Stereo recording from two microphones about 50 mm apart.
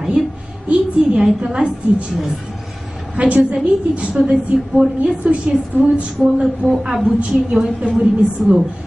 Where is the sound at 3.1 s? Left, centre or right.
Right.